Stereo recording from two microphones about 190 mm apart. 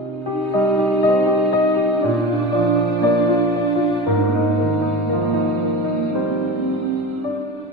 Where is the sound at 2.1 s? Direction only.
Centre (ahead or behind).